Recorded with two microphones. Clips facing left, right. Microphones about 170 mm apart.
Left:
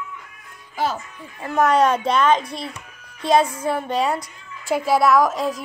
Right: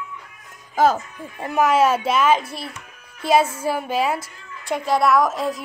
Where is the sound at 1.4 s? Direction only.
5° right (ahead or behind).